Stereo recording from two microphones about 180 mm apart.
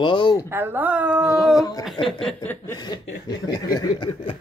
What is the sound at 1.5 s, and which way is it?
Speech, 20° left (ahead or behind).